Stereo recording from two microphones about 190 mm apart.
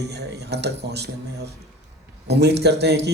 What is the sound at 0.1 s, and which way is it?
Speech, 60° right (ahead or behind).